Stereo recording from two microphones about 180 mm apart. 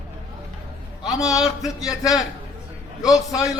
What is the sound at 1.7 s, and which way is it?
Speech, 20° left (ahead or behind).